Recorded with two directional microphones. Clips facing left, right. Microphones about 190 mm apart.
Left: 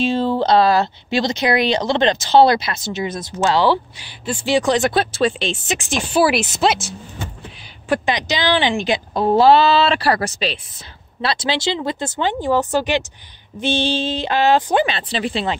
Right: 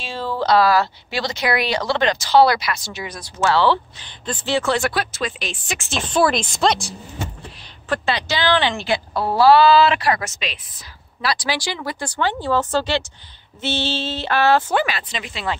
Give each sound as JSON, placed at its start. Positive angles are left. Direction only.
{"t": 0.0, "sound": "speech", "side_deg": 20}
{"t": 7.9, "sound": "speech", "side_deg": 15}